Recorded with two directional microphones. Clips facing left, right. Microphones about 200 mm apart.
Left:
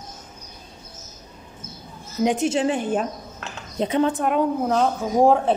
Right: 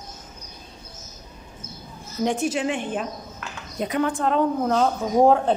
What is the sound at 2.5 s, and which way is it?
Speech, 35° left (ahead or behind).